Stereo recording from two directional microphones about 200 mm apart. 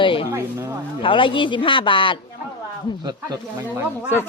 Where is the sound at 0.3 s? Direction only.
10° right (ahead or behind).